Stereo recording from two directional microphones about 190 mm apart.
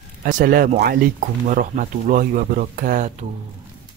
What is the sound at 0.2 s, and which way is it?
Speech, 45° right (ahead or behind).